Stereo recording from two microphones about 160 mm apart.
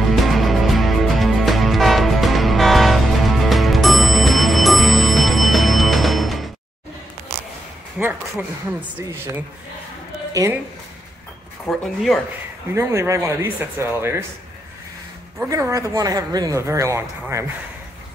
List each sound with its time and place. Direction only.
0.1 s music: centre (ahead or behind)
8.0 s a sound: 10° right (ahead or behind)
10.3 s speech: 20° right (ahead or behind)
11.6 s speech: centre (ahead or behind)
12.7 s speech: 15° right (ahead or behind)
15.3 s speech: 15° right (ahead or behind)